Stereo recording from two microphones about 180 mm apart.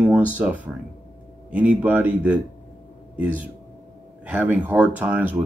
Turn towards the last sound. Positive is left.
turn(degrees=-5)  # may be behind; listen again after turning